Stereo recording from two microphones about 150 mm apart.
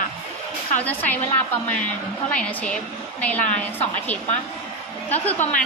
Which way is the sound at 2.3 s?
10° left (ahead or behind).